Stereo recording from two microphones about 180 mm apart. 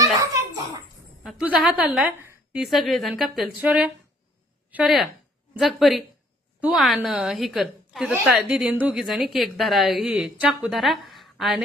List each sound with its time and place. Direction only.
0.0 s a sound: 15° right (ahead or behind)
1.2 s a woman's voice: 5° right (ahead or behind)
2.6 s a woman's voice: centre (ahead or behind)